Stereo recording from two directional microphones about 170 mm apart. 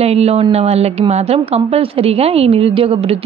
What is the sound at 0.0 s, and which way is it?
A woman's voice, 40° right (ahead or behind).